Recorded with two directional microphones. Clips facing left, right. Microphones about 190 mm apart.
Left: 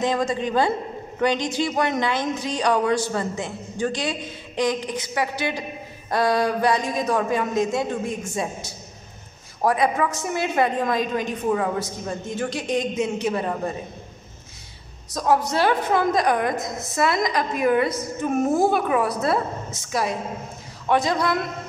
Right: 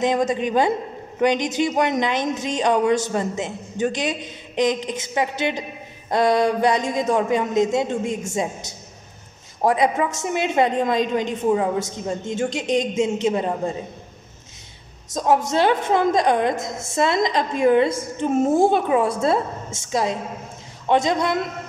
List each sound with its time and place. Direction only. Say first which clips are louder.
0.0 s a woman's voice: right 3 dB; 20° right (ahead or behind)
15.1 s a man's voice: right 2 dB; 20° right (ahead or behind)